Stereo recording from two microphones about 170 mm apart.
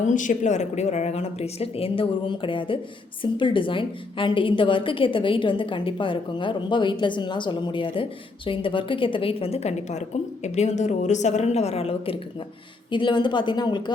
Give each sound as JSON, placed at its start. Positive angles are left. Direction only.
{"t": 0.0, "sound": "a woman's voice", "side_deg": 50}